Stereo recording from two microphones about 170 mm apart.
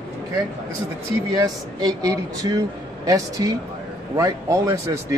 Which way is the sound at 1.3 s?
25° right (ahead or behind).